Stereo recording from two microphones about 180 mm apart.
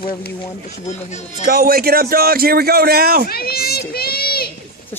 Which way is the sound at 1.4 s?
55° right (ahead or behind).